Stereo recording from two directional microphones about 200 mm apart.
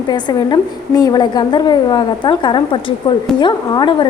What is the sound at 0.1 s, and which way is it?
A woman's voice, 20° left (ahead or behind).